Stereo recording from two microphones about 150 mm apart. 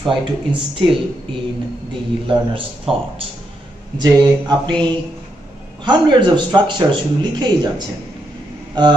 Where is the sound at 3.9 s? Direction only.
30° right (ahead or behind).